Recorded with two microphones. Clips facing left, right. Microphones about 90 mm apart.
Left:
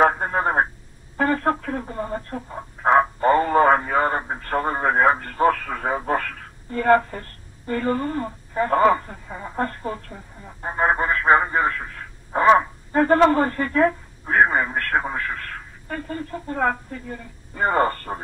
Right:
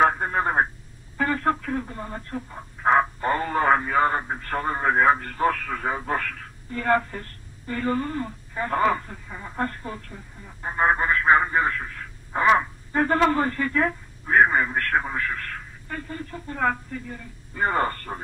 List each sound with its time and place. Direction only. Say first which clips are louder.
0.0 s telephone: left 2 dB; 30° left (ahead or behind)
1.1 s a woman's voice: left 3 dB; 35° left (ahead or behind)